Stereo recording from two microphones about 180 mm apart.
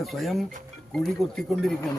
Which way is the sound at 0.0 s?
Centre (ahead or behind).